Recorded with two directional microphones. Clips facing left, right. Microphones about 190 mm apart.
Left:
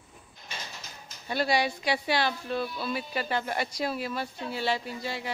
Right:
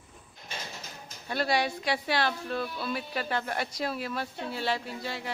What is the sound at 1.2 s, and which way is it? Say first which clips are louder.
Speech: left 1 dB; centre (ahead or behind).